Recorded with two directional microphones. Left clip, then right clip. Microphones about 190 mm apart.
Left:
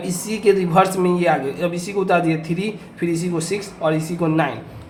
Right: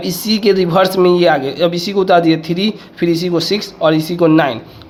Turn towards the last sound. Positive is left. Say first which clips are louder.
# right 9 dB
turn(degrees=-45)  # may be behind; listen again after turning